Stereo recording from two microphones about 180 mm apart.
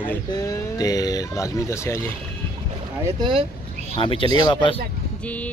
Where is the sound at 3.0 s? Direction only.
25° right (ahead or behind).